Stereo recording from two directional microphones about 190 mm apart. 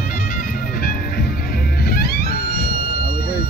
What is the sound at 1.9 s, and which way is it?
Music, 55° left (ahead or behind).